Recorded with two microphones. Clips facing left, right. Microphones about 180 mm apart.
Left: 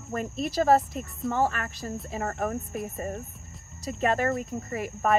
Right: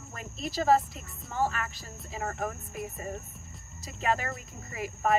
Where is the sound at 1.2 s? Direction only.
55° left (ahead or behind).